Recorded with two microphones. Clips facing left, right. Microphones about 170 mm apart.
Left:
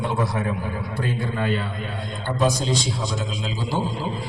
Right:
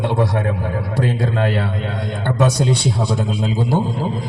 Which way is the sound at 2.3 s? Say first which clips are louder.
Right 4 dB; 70° right (ahead or behind).